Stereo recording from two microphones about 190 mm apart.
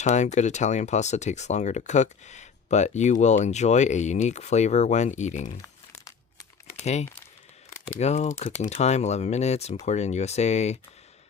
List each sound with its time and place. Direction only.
0.0 s speech: 40° left (ahead or behind)
5.6 s crumpling: 15° left (ahead or behind)
6.8 s speech: 35° left (ahead or behind)